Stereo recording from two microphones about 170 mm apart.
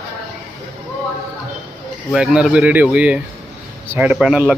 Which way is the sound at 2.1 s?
5° right (ahead or behind).